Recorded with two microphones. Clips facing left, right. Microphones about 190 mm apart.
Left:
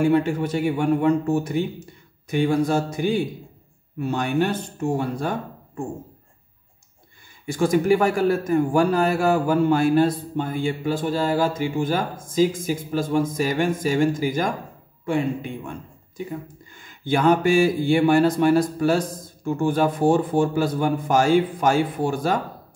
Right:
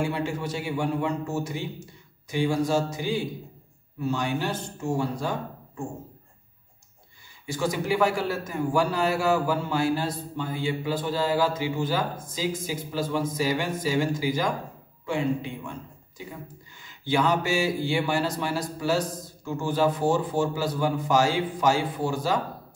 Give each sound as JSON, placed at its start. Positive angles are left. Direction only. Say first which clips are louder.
{"t": 0.0, "sound": "a man's voice", "louder": "left 8 dB", "side_deg": 55}
{"t": 7.4, "sound": "a man's voice", "louder": "left 8 dB", "side_deg": 50}
{"t": 16.8, "sound": "a man's voice", "louder": "left 5 dB", "side_deg": 50}